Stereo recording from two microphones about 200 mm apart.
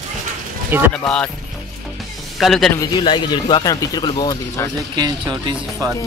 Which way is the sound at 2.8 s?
25° left (ahead or behind).